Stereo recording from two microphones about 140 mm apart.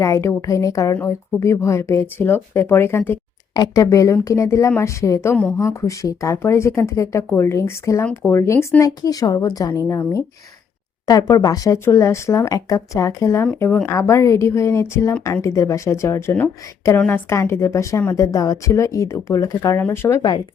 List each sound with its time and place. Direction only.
0.0 s a woman's voice: 20° left (ahead or behind)